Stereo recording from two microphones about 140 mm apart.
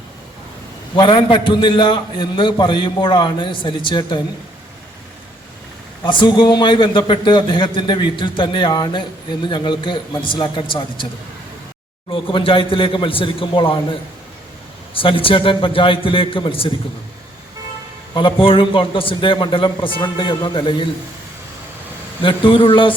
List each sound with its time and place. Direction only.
0.9 s a man's voice: 40° left (ahead or behind)
6.1 s a man's voice: 35° left (ahead or behind)
12.1 s a man's voice: 40° left (ahead or behind)
18.1 s a man's voice: 40° left (ahead or behind)
22.2 s a man's voice: 35° left (ahead or behind)